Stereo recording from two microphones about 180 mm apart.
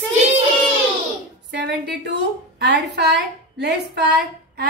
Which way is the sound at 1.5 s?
70° right (ahead or behind).